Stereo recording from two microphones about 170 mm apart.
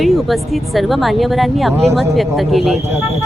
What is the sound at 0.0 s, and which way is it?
Speech, centre (ahead or behind).